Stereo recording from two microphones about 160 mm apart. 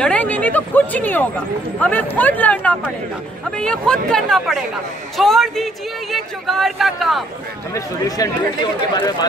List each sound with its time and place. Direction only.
0.0 s speech: 10° left (ahead or behind)
8.2 s speech: 20° left (ahead or behind)